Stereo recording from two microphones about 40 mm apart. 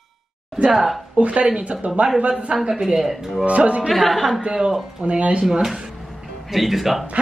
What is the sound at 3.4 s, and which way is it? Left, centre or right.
Speech, right.